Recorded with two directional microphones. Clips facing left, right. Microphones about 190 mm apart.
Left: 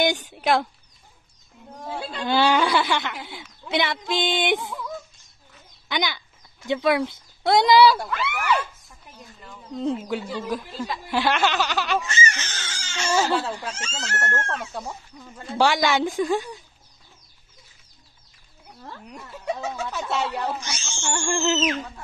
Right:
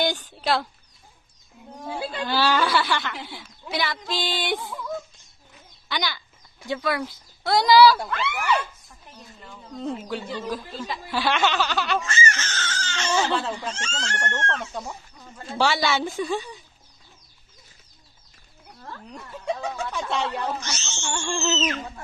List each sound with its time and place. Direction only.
0.0 s chicken: 20° left (ahead or behind)
1.9 s speech: 5° right (ahead or behind)
2.2 s speech: 20° left (ahead or behind)
5.9 s speech: 20° left (ahead or behind)
8.0 s speech: 5° left (ahead or behind)
9.9 s chicken: 5° left (ahead or behind)
19.0 s chicken: 5° left (ahead or behind)